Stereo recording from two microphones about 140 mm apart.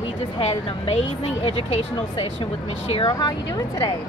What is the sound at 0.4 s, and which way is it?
A woman's voice, 45° left (ahead or behind).